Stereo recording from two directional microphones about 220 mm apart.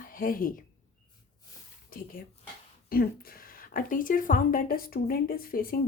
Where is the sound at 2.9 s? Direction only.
40° left (ahead or behind).